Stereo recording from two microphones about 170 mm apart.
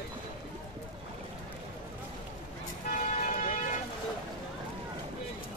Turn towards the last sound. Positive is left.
turn(degrees=45)  # may be behind; listen again after turning